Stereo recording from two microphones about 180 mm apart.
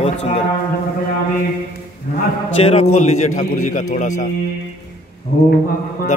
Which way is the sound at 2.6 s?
35° left (ahead or behind).